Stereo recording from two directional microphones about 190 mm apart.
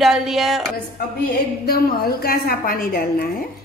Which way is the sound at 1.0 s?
55° left (ahead or behind).